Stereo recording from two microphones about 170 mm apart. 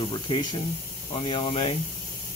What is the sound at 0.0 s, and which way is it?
Speech, 25° left (ahead or behind).